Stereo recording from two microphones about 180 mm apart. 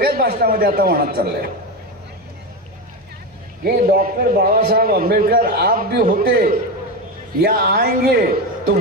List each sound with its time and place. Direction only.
0.0 s a man's voice: 60° right (ahead or behind)
3.6 s a man's voice: 55° right (ahead or behind)